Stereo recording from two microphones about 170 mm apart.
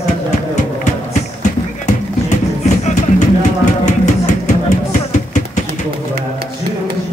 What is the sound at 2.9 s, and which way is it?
Music, 45° left (ahead or behind).